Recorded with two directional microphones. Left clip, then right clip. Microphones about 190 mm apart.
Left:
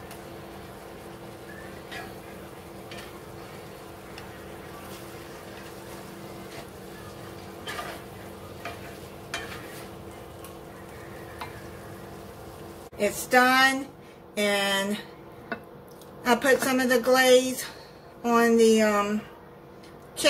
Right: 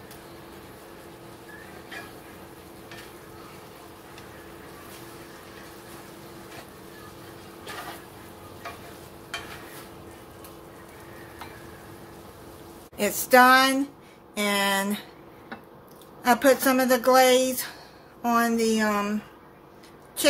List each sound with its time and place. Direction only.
12.9 s a woman's voice: 55° right (ahead or behind)
16.3 s a woman's voice: 45° right (ahead or behind)